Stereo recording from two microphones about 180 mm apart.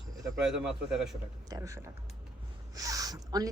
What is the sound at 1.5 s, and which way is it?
A woman's voice, 20° right (ahead or behind).